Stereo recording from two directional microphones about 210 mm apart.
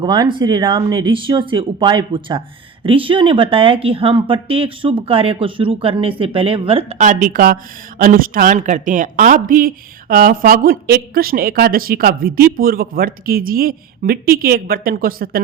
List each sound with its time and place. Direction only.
0.0 s speech: 20° right (ahead or behind); by 15.4 s 45° right (ahead or behind)